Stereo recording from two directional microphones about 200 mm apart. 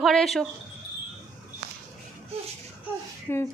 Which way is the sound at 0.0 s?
Centre (ahead or behind).